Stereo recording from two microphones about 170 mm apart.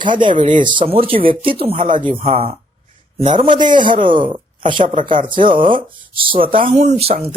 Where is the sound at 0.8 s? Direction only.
35° right (ahead or behind).